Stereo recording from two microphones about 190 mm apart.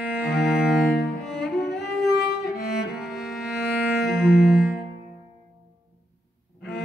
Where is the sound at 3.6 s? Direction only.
55° left (ahead or behind).